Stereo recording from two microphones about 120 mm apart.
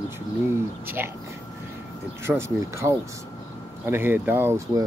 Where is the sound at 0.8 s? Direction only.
20° right (ahead or behind).